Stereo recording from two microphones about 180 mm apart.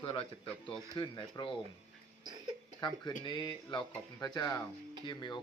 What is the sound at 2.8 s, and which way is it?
Speech, 25° left (ahead or behind).